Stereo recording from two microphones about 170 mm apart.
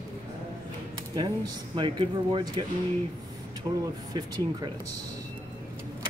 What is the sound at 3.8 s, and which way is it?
Speech, 25° right (ahead or behind).